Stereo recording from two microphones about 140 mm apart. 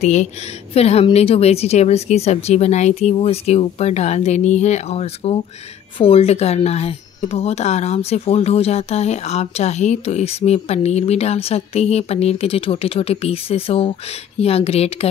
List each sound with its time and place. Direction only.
0.0 s speech: 55° left (ahead or behind)